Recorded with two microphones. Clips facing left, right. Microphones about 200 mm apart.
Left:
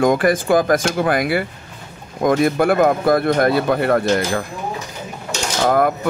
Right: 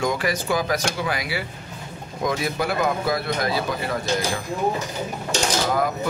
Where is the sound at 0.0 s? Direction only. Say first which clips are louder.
Left 8 dB; 50° left (ahead or behind).